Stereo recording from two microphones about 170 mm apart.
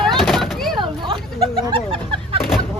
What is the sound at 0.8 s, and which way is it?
Bird, 30° right (ahead or behind).